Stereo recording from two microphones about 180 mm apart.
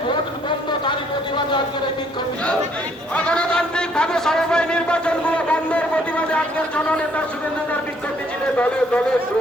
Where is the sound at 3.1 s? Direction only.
5° left (ahead or behind).